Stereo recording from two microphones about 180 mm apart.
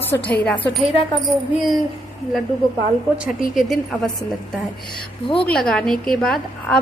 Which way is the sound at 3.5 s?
Centre (ahead or behind).